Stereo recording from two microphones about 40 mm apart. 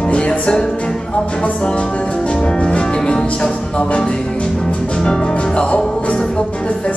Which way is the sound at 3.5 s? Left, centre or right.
Left.